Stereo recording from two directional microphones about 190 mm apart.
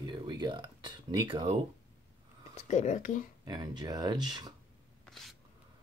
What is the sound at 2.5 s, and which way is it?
Speech, 35° left (ahead or behind).